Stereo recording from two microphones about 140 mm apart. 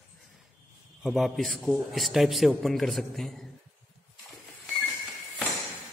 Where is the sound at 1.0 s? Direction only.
Centre (ahead or behind).